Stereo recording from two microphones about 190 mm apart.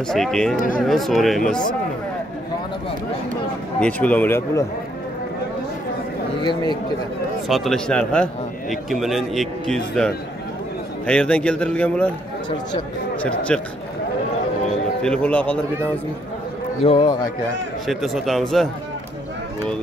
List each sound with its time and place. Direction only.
0.1 s a man's voice: centre (ahead or behind)
3.8 s a man's voice: 5° left (ahead or behind)
6.4 s a man's voice: 25° left (ahead or behind)
7.4 s a man's voice: centre (ahead or behind)
13.5 s a man's voice: 5° left (ahead or behind)
15.0 s a man's voice: 5° left (ahead or behind)
16.8 s a man's voice: 25° left (ahead or behind)
17.8 s a man's voice: centre (ahead or behind)